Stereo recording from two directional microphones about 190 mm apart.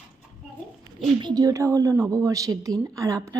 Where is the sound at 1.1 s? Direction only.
20° right (ahead or behind).